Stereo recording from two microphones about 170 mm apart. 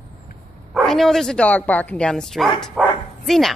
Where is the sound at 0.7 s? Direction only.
Centre (ahead or behind).